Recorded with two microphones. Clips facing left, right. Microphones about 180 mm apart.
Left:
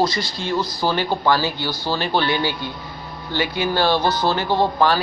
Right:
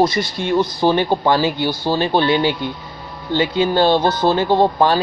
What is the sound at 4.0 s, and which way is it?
Speech, 55° right (ahead or behind).